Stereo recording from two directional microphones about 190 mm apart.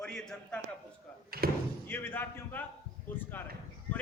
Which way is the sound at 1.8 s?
10° left (ahead or behind).